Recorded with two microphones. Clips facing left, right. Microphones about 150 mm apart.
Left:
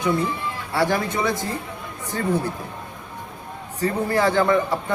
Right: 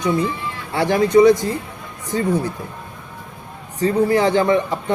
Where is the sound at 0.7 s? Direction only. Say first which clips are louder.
Right 7 dB; 20° right (ahead or behind).